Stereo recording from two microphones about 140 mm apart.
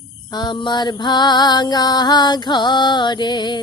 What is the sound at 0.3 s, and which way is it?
Music, 30° left (ahead or behind).